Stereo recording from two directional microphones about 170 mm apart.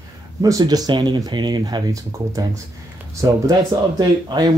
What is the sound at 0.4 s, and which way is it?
Speech, 20° right (ahead or behind).